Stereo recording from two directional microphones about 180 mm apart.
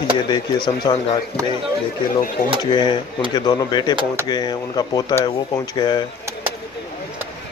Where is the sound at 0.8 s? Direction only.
25° left (ahead or behind).